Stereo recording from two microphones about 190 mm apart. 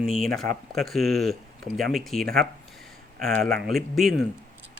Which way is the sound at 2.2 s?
50° right (ahead or behind).